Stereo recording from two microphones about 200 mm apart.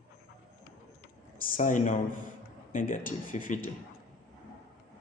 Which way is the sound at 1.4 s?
40° left (ahead or behind).